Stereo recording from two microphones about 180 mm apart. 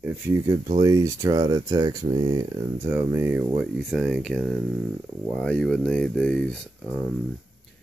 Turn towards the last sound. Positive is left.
turn(degrees=5)  # may be behind; listen again after turning